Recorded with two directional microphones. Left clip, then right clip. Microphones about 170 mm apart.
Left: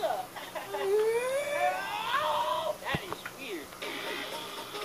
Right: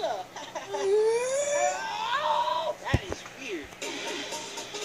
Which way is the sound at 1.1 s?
60° right (ahead or behind).